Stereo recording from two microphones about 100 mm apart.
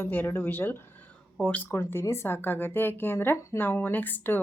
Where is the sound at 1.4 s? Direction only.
5° left (ahead or behind).